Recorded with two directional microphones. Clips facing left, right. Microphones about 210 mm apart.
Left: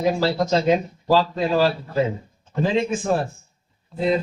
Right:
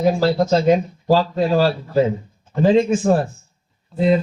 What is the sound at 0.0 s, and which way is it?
Speech, 45° right (ahead or behind).